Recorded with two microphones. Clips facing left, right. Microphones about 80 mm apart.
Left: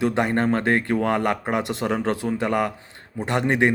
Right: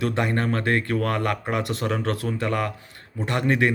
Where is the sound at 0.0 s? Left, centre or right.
Left.